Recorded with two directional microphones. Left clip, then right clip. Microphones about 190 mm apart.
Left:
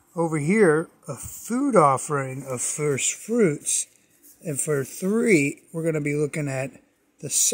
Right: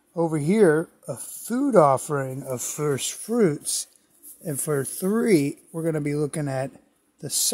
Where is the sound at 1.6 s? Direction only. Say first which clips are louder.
Right 1 dB; 5° right (ahead or behind).